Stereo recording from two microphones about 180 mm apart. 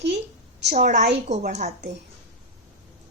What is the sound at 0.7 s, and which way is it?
A woman's voice, 40° right (ahead or behind).